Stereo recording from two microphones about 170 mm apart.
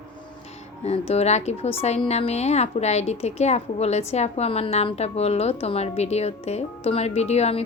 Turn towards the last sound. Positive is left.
turn(degrees=40)  # may be behind; listen again after turning